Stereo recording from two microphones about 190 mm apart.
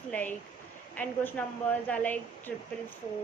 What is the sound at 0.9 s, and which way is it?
A woman's voice, 5° left (ahead or behind).